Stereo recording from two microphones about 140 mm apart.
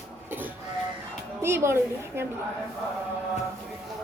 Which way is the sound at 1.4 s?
15° right (ahead or behind).